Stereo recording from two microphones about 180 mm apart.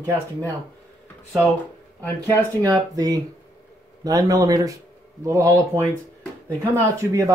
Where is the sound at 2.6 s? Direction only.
20° right (ahead or behind).